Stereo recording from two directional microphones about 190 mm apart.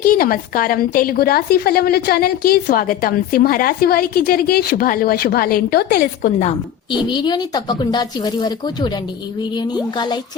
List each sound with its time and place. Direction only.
0.0 s a woman's voice: 50° left (ahead or behind)
7.1 s speech: 25° left (ahead or behind)